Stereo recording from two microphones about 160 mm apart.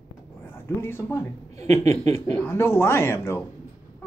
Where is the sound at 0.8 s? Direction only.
15° left (ahead or behind).